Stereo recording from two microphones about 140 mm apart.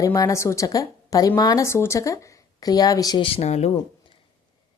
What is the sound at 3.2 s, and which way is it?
Speech, 45° left (ahead or behind).